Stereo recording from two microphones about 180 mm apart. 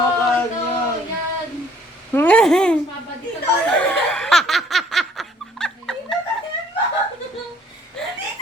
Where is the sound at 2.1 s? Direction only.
5° left (ahead or behind).